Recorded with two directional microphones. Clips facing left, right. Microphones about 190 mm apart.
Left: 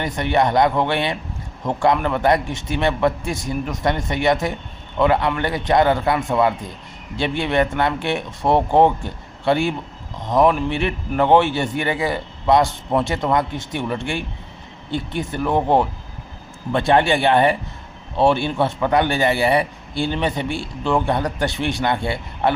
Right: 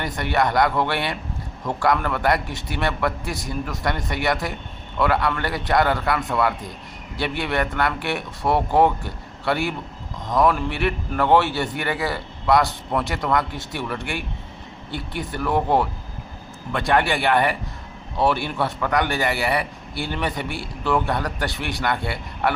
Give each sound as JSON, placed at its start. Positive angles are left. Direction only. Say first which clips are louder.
{"t": 0.0, "sound": "a man's voice", "louder": "left 3 dB", "side_deg": 20}